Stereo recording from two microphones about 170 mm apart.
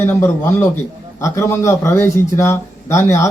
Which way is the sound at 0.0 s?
15° left (ahead or behind).